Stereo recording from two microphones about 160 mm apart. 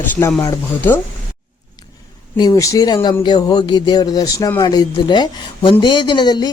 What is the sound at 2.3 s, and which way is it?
Speech, 25° left (ahead or behind).